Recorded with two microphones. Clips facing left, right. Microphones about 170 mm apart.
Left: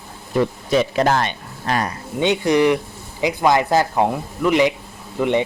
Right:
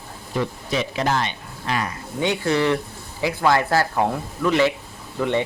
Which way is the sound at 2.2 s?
20° left (ahead or behind).